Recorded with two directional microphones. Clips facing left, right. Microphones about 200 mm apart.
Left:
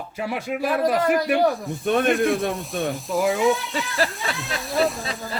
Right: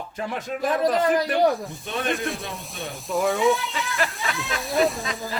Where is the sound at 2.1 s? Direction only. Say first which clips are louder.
Left 9 dB; centre (ahead or behind).